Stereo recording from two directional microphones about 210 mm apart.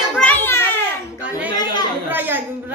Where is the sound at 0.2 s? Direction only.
10° left (ahead or behind).